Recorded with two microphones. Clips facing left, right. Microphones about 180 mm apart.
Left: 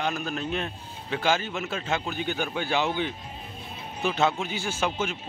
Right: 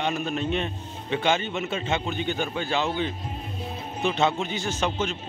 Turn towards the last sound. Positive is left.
turn(degrees=10)  # may be behind; listen again after turning